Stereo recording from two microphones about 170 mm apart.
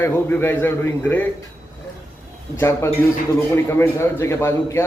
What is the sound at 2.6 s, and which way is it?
A man's voice, 15° left (ahead or behind).